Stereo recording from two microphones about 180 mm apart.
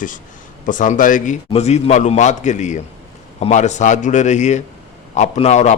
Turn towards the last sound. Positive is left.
turn(degrees=40)  # may be behind; listen again after turning